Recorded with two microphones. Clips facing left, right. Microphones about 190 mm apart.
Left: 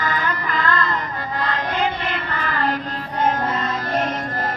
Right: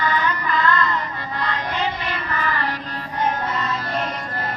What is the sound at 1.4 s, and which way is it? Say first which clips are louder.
Child singing: left 2 dB; 50° left (ahead or behind).